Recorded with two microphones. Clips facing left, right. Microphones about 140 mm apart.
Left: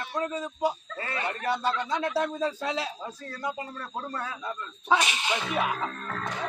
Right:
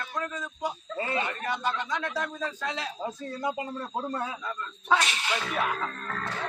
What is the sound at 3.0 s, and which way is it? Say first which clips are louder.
Speech: right 3 dB; 20° right (ahead or behind).